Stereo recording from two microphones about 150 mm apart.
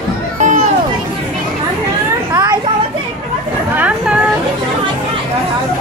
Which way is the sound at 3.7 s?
10° right (ahead or behind).